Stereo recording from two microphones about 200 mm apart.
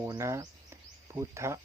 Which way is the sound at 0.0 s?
15° right (ahead or behind).